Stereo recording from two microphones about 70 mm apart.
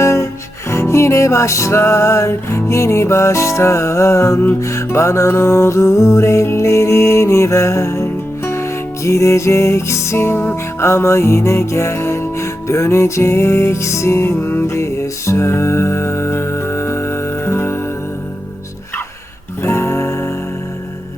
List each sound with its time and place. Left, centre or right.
0.0 s music: left
19.6 s music: left